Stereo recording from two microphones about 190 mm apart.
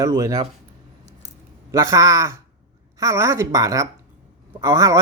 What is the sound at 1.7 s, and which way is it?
Speech, 15° right (ahead or behind).